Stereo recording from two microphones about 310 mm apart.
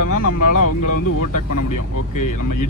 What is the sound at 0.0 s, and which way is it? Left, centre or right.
Speech, left.